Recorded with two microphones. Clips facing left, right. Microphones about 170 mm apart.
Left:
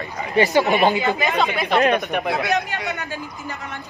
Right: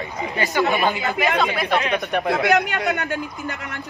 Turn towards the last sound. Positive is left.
turn(degrees=-70)  # may be behind; listen again after turning